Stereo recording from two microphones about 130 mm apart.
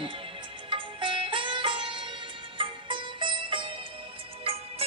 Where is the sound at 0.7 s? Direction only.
40° right (ahead or behind).